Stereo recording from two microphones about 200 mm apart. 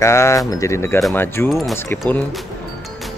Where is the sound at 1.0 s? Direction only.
Centre (ahead or behind).